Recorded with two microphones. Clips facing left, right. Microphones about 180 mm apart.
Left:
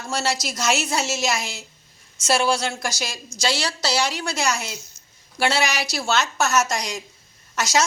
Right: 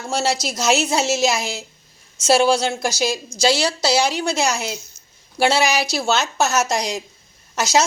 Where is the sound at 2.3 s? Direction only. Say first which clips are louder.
Right 5 dB; 25° right (ahead or behind).